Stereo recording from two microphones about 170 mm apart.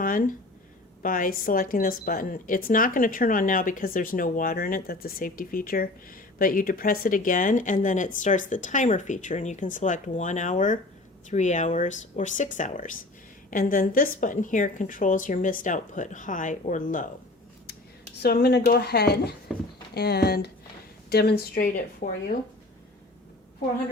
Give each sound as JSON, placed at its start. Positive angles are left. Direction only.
{"t": 0.0, "sound": "a woman's voice", "side_deg": 55}
{"t": 18.2, "sound": "speech", "side_deg": 70}
{"t": 19.5, "sound": "a sound", "side_deg": 0}
{"t": 19.9, "sound": "a woman's voice", "side_deg": 70}